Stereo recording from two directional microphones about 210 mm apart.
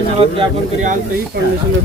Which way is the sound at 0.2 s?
30° right (ahead or behind).